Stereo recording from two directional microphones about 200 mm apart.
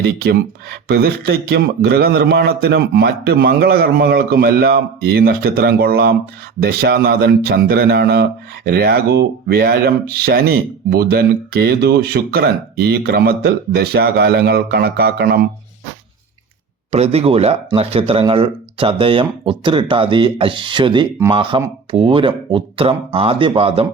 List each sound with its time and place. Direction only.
0.0 s speech: 50° right (ahead or behind)
16.9 s speech: 30° right (ahead or behind)